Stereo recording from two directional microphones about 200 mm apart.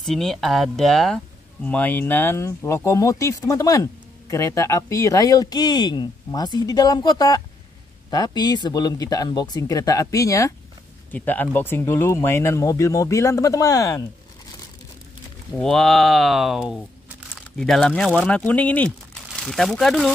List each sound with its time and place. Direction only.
0.0 s speech: centre (ahead or behind)
15.5 s speech: centre (ahead or behind)